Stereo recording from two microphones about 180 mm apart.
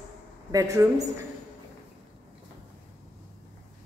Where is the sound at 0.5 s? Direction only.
15° right (ahead or behind).